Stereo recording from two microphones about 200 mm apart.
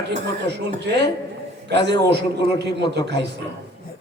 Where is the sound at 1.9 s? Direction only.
60° right (ahead or behind).